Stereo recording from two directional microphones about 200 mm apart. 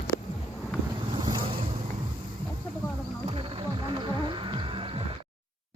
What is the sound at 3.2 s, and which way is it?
Music, 25° right (ahead or behind).